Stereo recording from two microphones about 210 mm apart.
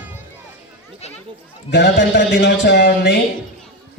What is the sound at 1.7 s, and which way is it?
A man's voice, 55° left (ahead or behind).